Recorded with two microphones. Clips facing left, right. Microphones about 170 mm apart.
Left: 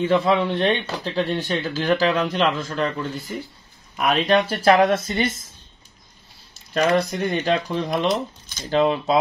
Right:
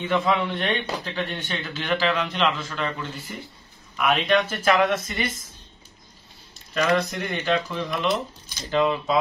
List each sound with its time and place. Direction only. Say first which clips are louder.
0.0 s speech: left 4 dB; 35° left (ahead or behind)
6.7 s speech: left 3 dB; 35° left (ahead or behind)